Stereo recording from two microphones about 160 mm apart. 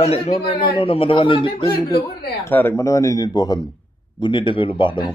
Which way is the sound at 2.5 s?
15° left (ahead or behind).